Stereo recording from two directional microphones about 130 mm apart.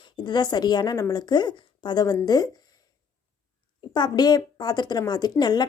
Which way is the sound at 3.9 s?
35° left (ahead or behind).